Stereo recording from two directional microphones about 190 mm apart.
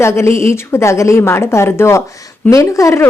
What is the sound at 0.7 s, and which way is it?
A woman's voice, 15° left (ahead or behind).